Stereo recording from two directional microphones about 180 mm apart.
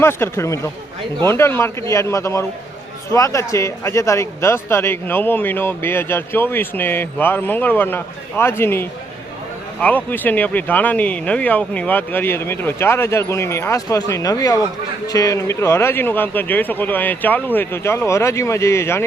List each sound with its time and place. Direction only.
0.0 s speech: 15° left (ahead or behind)